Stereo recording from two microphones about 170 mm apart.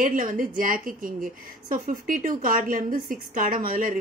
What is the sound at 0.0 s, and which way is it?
Speech, 55° right (ahead or behind).